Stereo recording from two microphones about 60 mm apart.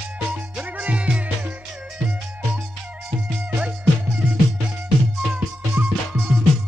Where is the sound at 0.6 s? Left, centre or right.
Centre.